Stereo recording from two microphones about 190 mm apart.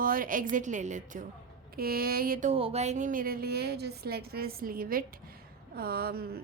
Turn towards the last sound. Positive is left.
turn(degrees=-55)  # may be behind; listen again after turning